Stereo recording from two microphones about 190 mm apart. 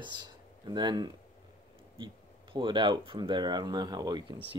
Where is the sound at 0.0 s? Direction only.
25° right (ahead or behind).